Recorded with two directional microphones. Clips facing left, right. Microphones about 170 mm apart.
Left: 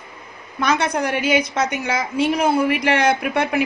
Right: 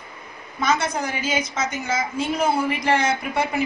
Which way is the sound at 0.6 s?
65° left (ahead or behind).